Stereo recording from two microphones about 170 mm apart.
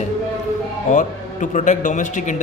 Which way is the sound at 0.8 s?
45° left (ahead or behind).